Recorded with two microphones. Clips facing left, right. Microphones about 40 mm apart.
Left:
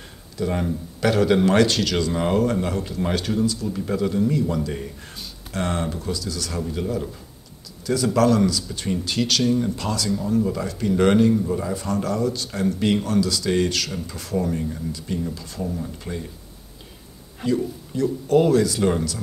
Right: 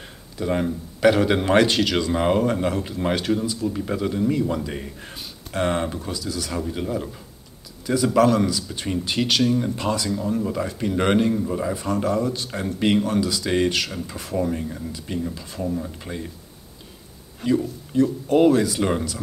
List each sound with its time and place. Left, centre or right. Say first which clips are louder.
0.0 s speech: left 1 dB; centre
17.5 s speech: right 1 dB; centre